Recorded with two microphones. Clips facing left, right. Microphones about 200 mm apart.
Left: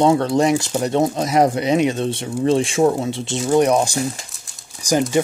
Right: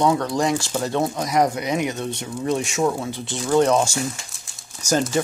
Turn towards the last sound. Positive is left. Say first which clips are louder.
# left 3 dB
turn(degrees=15)  # may be behind; listen again after turning